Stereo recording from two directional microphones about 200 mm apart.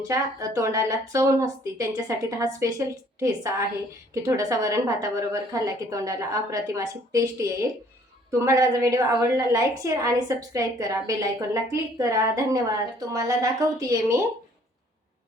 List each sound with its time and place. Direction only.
0.1 s a woman's voice: 15° right (ahead or behind)